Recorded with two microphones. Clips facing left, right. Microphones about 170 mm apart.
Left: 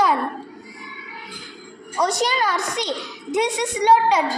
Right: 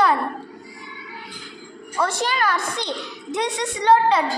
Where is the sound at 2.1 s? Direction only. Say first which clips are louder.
Left 2 dB; 20° left (ahead or behind).